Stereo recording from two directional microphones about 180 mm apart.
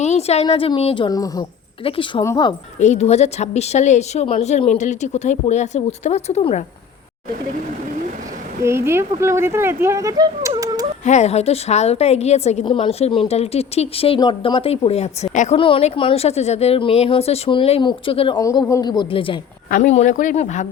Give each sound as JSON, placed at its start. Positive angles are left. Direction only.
{"t": 0.0, "sound": "a sound", "side_deg": 35}
{"t": 0.4, "sound": "a woman's voice", "side_deg": 25}
{"t": 2.8, "sound": "a woman's voice", "side_deg": 40}
{"t": 8.6, "sound": "speech", "side_deg": -15}
{"t": 11.0, "sound": "a woman's voice", "side_deg": 40}
{"t": 18.4, "sound": "a woman's voice", "side_deg": 15}
{"t": 19.7, "sound": "speech", "side_deg": 40}